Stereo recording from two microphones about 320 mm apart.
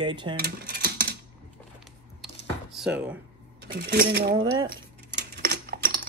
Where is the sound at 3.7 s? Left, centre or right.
Right.